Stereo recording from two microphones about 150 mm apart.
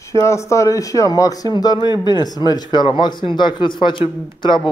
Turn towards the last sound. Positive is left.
turn(degrees=30)  # may be behind; listen again after turning